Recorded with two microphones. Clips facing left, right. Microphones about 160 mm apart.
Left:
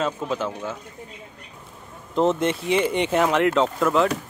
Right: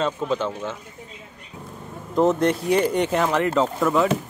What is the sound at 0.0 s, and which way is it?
Speech, 5° left (ahead or behind).